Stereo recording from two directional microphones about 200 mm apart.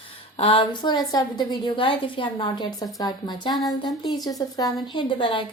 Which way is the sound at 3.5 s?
Centre (ahead or behind).